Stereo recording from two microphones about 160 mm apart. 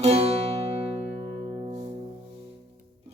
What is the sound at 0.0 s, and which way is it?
Music, 40° right (ahead or behind).